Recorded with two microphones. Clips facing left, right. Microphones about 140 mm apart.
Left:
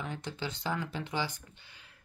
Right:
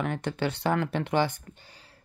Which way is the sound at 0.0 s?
65° right (ahead or behind).